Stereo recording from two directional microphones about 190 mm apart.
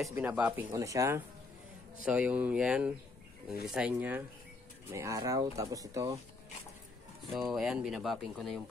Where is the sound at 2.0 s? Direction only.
5° right (ahead or behind).